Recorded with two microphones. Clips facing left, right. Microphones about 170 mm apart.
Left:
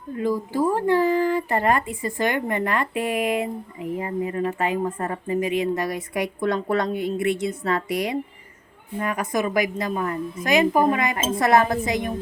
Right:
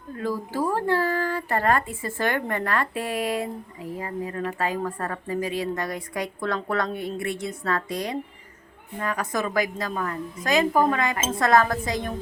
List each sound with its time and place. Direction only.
0.2 s a woman's voice: 15° left (ahead or behind)